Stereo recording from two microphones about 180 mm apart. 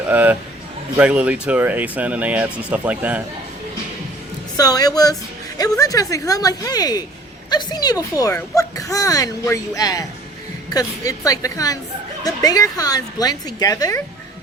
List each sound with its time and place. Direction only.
0.1 s speech: 10° right (ahead or behind)
4.5 s a child's voice: 20° left (ahead or behind)